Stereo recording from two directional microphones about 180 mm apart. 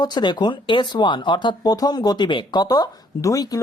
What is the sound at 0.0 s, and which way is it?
Speech, 25° left (ahead or behind).